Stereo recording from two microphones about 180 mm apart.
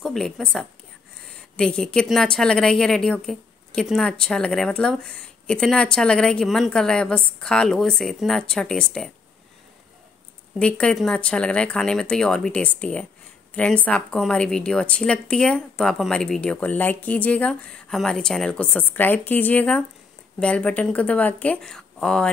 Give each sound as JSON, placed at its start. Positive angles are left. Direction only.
{"t": 0.0, "sound": "a woman's voice", "side_deg": 0}
{"t": 10.6, "sound": "a woman's voice", "side_deg": 5}